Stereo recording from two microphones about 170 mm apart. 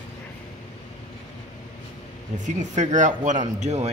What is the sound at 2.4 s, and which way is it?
Speech, 45° right (ahead or behind).